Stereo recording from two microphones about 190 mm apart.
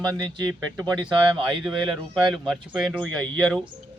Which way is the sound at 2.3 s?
Centre (ahead or behind).